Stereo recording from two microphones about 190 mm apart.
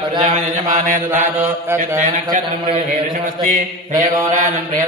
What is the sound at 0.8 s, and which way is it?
Speech, 45° right (ahead or behind).